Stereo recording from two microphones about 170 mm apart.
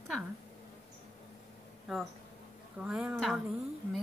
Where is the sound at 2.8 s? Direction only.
5° right (ahead or behind).